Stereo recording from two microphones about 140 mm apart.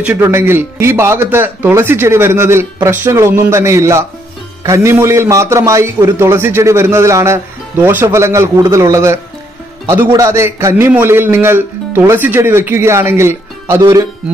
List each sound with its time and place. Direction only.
0.0 s a man's voice: 20° right (ahead or behind)